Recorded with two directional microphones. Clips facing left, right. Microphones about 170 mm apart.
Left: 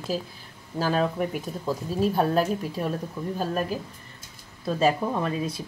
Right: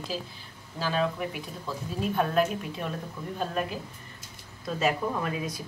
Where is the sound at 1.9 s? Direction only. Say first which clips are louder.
Left 3 dB; 35° left (ahead or behind).